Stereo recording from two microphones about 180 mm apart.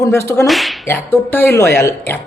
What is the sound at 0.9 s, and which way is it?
A man's voice, 10° left (ahead or behind).